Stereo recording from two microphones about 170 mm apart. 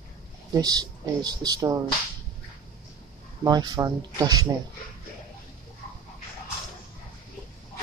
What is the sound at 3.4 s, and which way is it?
Speech, 25° right (ahead or behind).